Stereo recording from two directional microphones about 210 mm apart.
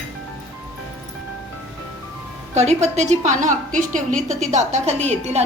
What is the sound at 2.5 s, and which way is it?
Speech, 30° right (ahead or behind).